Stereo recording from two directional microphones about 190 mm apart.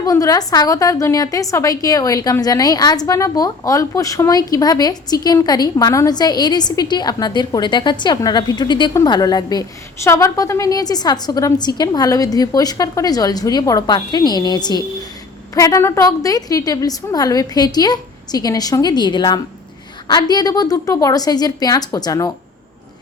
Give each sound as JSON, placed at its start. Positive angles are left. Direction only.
{"t": 0.0, "sound": "a woman's voice", "side_deg": 20}